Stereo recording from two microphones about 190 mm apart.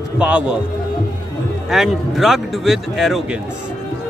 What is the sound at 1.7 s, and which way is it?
A man's voice, centre (ahead or behind).